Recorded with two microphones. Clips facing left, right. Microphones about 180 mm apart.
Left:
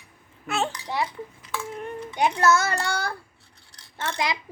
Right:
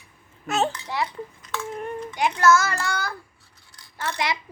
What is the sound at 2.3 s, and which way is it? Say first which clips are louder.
Child singing: right 4 dB; 30° left (ahead or behind).